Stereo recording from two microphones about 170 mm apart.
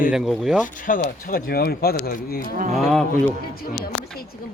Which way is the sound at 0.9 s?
55° left (ahead or behind).